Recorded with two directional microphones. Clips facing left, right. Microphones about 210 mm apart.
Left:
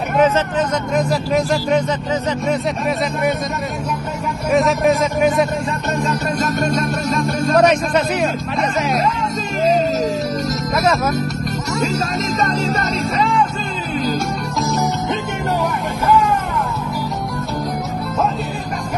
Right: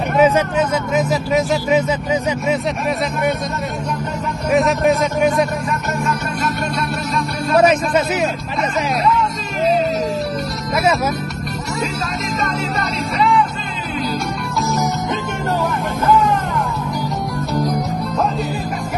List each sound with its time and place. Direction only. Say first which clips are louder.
0.2 s speech: right 1 dB; 5° right (ahead or behind)
4.5 s speech: even; centre (ahead or behind)
6.0 s music: left 2 dB; 45° left (ahead or behind)
7.5 s speech: right 1 dB; 5° right (ahead or behind)
13.2 s music: right 3 dB; 45° left (ahead or behind)